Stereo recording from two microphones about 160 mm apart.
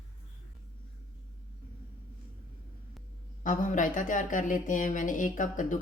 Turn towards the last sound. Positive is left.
turn(degrees=55)  # may be behind; listen again after turning